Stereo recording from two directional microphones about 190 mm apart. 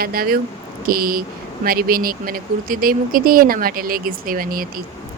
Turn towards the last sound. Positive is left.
turn(degrees=-50)  # may be behind; listen again after turning